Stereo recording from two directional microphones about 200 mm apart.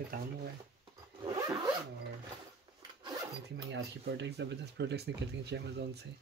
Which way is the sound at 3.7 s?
60° right (ahead or behind).